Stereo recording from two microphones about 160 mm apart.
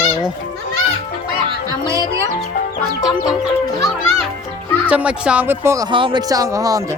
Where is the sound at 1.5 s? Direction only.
20° right (ahead or behind).